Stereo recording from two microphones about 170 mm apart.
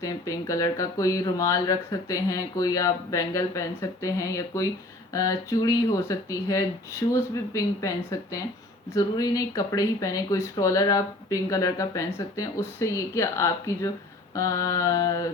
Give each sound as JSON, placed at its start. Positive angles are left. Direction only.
{"t": 0.0, "sound": "speech", "side_deg": 20}